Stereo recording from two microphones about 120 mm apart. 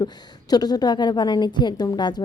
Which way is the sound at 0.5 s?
35° left (ahead or behind).